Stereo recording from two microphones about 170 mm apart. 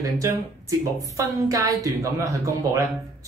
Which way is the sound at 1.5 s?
20° right (ahead or behind).